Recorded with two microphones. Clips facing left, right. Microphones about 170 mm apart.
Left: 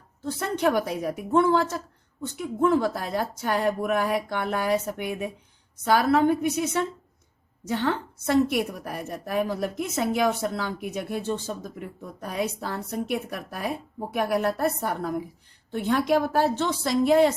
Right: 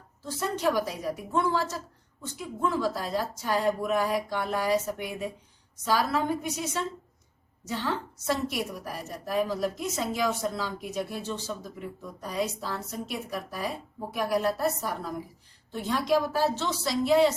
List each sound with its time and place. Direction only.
0.3 s a woman's voice: 60° left (ahead or behind)